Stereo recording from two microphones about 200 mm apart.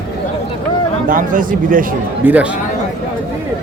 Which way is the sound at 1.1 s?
45° right (ahead or behind).